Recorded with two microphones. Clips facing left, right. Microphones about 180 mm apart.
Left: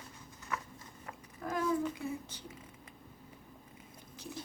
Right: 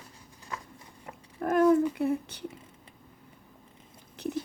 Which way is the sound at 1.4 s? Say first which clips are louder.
Right 11 dB; 60° right (ahead or behind).